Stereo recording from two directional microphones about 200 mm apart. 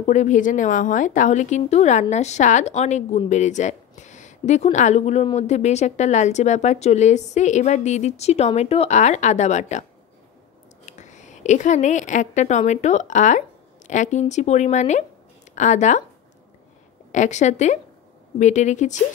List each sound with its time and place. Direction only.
0.0 s speech: 35° left (ahead or behind)
10.9 s a woman's voice: 35° left (ahead or behind)
17.1 s speech: 35° left (ahead or behind)